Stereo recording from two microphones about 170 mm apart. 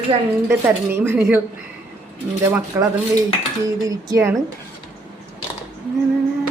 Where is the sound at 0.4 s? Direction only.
15° right (ahead or behind).